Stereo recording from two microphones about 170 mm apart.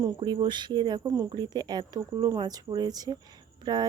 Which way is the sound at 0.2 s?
30° right (ahead or behind).